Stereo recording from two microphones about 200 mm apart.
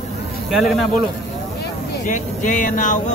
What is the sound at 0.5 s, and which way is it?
Speech, centre (ahead or behind).